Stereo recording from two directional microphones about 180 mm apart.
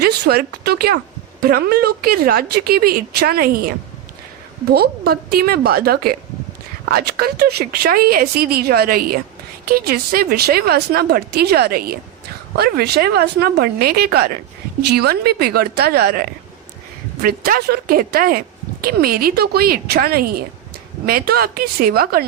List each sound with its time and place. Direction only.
0.0 s speech: 60° right (ahead or behind)